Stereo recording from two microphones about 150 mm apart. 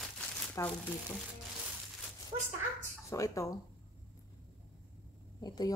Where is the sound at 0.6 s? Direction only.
20° left (ahead or behind).